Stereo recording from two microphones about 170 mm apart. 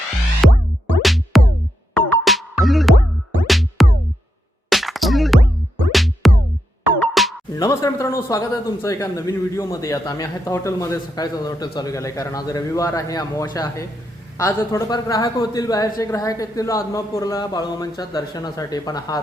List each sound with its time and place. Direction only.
1.0 s music: centre (ahead or behind)
7.5 s speech: 20° left (ahead or behind)